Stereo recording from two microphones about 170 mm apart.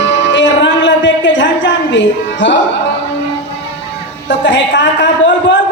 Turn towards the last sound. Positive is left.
turn(degrees=90)